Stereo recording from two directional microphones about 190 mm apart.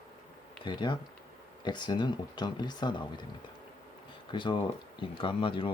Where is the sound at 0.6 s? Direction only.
25° left (ahead or behind).